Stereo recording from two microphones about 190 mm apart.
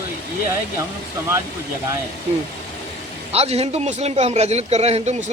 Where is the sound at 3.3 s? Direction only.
35° right (ahead or behind).